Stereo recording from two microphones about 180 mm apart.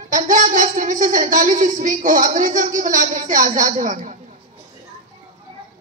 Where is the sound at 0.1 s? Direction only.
45° right (ahead or behind).